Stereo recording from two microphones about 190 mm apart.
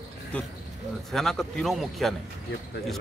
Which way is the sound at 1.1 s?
Centre (ahead or behind).